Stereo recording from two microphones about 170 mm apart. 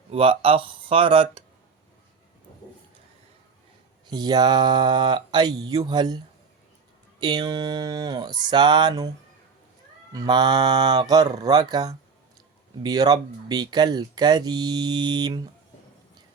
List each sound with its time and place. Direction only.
0.1 s speech: 35° right (ahead or behind)
4.0 s speech: 25° right (ahead or behind)